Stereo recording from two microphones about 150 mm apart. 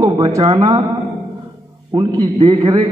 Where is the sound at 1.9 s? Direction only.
30° right (ahead or behind).